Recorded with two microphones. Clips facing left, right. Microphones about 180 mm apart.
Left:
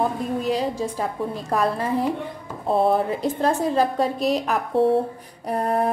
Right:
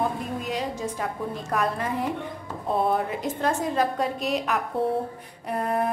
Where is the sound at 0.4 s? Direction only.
35° left (ahead or behind).